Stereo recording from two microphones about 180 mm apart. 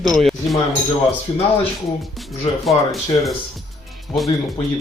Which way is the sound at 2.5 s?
35° left (ahead or behind).